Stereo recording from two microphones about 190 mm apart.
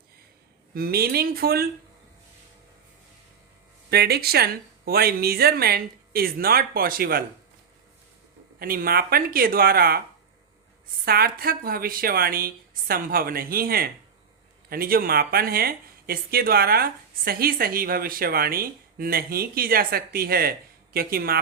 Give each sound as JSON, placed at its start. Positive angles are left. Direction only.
{"t": 0.7, "sound": "speech", "side_deg": -55}
{"t": 3.8, "sound": "speech", "side_deg": -55}
{"t": 8.5, "sound": "speech", "side_deg": -50}
{"t": 11.0, "sound": "speech", "side_deg": -55}